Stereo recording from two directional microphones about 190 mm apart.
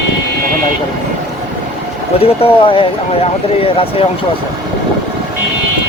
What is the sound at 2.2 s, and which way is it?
Speech, 30° left (ahead or behind).